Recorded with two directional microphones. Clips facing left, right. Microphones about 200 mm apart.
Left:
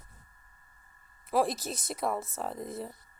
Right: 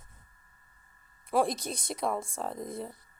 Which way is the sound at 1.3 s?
Centre (ahead or behind).